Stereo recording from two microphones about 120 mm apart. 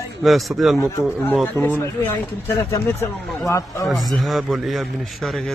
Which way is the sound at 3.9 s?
Centre (ahead or behind).